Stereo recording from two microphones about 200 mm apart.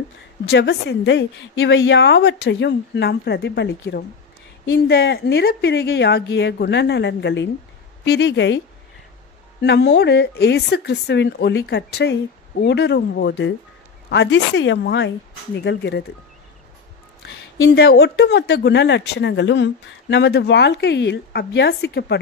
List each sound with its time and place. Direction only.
0.5 s speech: 55° left (ahead or behind)
9.6 s speech: 60° left (ahead or behind)
17.3 s speech: 60° left (ahead or behind)